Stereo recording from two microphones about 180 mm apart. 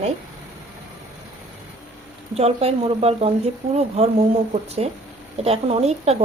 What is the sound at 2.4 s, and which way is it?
Speech, 35° right (ahead or behind).